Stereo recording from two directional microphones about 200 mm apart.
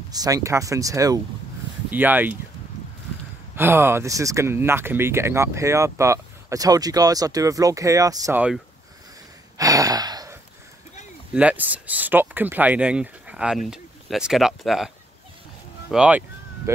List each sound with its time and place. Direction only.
0.1 s speech: 20° right (ahead or behind)
3.5 s speech: 10° right (ahead or behind)
9.6 s gasp: 15° right (ahead or behind)
11.3 s speech: 5° right (ahead or behind)
15.9 s a sound: 5° right (ahead or behind)